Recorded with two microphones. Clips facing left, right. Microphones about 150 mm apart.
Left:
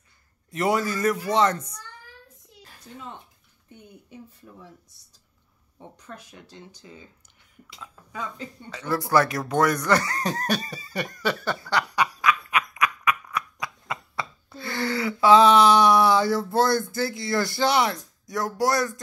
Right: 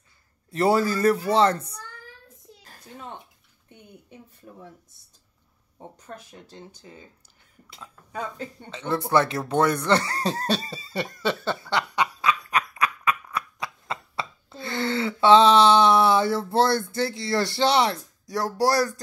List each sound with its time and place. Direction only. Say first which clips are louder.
0.5 s speech: right 3 dB; 30° right (ahead or behind)
5.8 s speech: right 2 dB; 45° right (ahead or behind)
8.2 s speech: right 2 dB; 55° right (ahead or behind)
8.6 s speech: even; 25° right (ahead or behind)
11.6 s snicker: left 2 dB; 25° right (ahead or behind)
12.7 s a sound: even; 30° right (ahead or behind)
16.9 s speech: right 1 dB; 30° right (ahead or behind)